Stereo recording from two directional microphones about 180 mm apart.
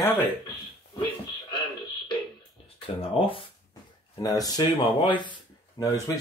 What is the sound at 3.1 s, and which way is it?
Speech, 30° left (ahead or behind).